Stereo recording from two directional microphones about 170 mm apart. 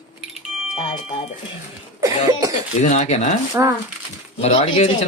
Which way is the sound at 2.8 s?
45° left (ahead or behind).